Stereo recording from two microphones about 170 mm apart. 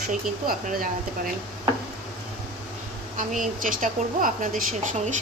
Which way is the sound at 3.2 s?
50° right (ahead or behind).